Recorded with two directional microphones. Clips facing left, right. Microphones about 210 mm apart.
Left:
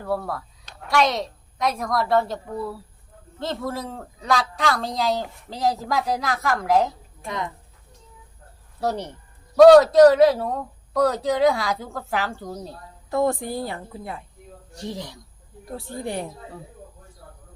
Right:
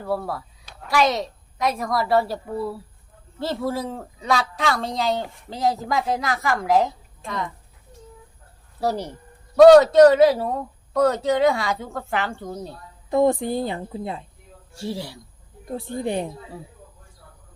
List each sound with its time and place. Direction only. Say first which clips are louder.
0.0 s a woman's voice: even; 5° right (ahead or behind)
7.3 s speech: even; 20° left (ahead or behind)
8.8 s a man's voice: right 1 dB; 5° right (ahead or behind)
13.1 s a woman's voice: right 4 dB; 20° right (ahead or behind)
14.8 s speech: right 3 dB; 5° right (ahead or behind)
15.6 s a woman's voice: right 4 dB; 20° right (ahead or behind)